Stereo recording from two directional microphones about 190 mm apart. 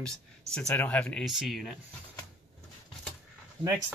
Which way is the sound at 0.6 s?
5° left (ahead or behind).